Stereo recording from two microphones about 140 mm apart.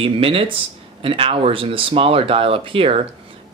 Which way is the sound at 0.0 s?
40° right (ahead or behind).